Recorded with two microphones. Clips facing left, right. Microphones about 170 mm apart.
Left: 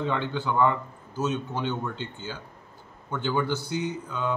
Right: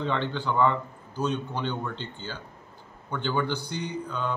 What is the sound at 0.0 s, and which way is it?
A man's voice, 5° left (ahead or behind).